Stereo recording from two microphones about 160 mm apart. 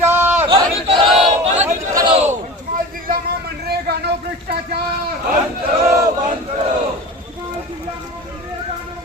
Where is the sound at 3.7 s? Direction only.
90° right.